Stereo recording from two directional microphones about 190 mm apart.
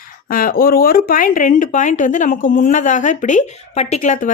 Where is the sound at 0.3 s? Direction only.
50° left (ahead or behind).